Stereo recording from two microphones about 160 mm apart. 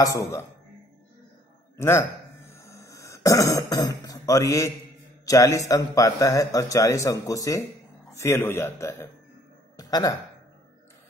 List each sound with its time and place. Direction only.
0.0 s speech: 20° left (ahead or behind)
1.8 s cough: 15° left (ahead or behind)
5.2 s a man's voice: 20° left (ahead or behind)